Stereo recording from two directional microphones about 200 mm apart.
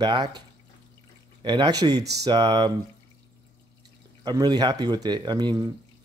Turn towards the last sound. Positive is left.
turn(degrees=-20)  # may be behind; listen again after turning